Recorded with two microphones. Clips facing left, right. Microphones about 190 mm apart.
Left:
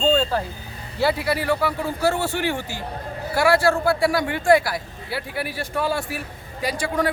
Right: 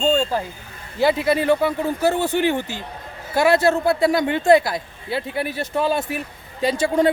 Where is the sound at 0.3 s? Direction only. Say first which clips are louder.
Even; 15° right (ahead or behind).